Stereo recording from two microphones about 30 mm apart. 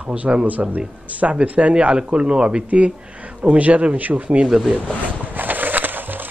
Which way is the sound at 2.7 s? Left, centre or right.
Right.